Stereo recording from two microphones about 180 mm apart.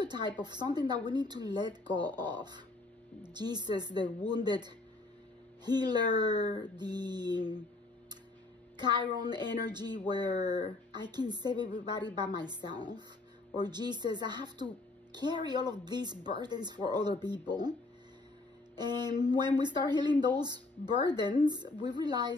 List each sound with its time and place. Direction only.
0.0 s speech: 25° right (ahead or behind)
8.7 s speech: 25° right (ahead or behind)
18.8 s speech: 25° right (ahead or behind)